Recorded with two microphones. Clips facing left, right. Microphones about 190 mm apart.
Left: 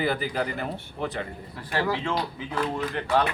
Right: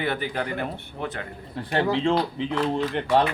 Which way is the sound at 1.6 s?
30° right (ahead or behind).